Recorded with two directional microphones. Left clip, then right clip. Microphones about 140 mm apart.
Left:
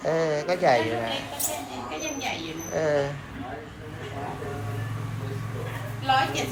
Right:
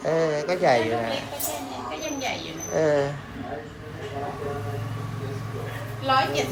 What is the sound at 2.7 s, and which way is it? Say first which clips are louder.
Speech: right 3 dB; 30° right (ahead or behind).